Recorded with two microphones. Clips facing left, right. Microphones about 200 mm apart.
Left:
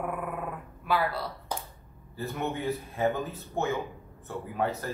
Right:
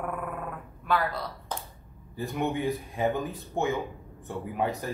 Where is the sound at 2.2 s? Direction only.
15° right (ahead or behind).